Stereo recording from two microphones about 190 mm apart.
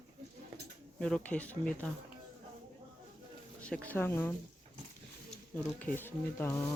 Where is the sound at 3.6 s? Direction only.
5° left (ahead or behind).